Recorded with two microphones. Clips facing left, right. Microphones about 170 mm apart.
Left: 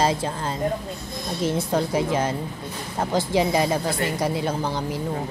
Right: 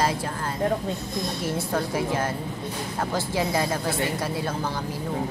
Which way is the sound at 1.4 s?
20° left (ahead or behind).